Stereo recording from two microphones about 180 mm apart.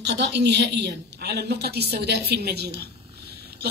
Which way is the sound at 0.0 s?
70° right (ahead or behind).